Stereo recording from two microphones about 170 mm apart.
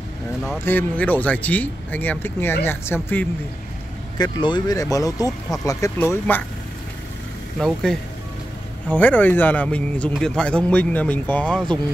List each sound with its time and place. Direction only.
0.7 s a man's voice: 10° left (ahead or behind)
4.2 s a man's voice: 25° left (ahead or behind); by 6.4 s 10° left (ahead or behind)
7.5 s a man's voice: centre (ahead or behind)